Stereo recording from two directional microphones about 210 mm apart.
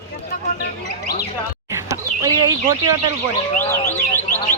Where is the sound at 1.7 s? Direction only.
15° right (ahead or behind).